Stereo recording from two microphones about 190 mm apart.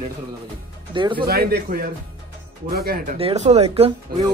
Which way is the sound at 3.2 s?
35° right (ahead or behind).